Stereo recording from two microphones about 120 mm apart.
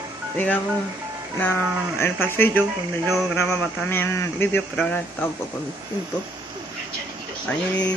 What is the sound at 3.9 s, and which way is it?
Speech, 20° left (ahead or behind).